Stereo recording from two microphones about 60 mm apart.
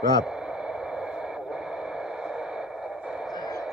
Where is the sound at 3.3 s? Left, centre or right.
Left.